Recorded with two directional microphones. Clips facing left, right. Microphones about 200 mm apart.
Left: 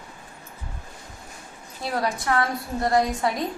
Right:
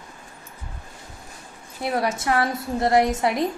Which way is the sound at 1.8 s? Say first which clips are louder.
Right 2 dB; 25° right (ahead or behind).